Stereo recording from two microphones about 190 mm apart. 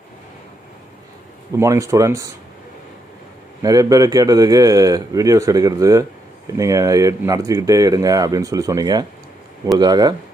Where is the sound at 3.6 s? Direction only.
20° right (ahead or behind).